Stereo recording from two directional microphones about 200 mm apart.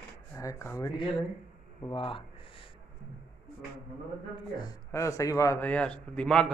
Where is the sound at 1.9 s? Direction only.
25° left (ahead or behind).